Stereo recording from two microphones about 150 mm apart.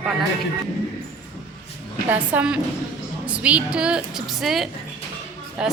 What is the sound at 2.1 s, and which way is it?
A woman's voice, 10° right (ahead or behind).